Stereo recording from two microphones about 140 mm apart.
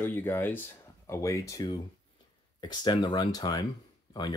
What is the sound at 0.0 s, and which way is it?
Speech, 15° left (ahead or behind).